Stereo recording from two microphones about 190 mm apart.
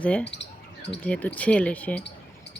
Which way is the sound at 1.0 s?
10° left (ahead or behind).